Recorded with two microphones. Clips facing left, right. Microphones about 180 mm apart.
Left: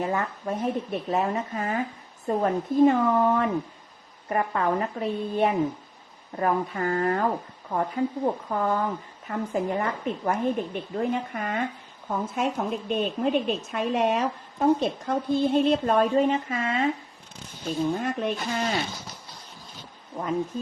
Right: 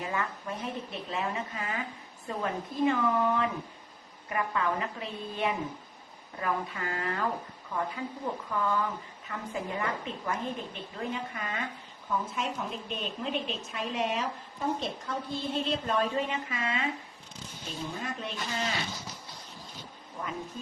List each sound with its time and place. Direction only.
0.0 s a woman's voice: 45° left (ahead or behind)
20.1 s speech: 60° left (ahead or behind)